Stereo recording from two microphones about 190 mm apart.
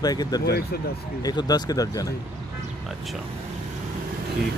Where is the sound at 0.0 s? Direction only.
20° left (ahead or behind).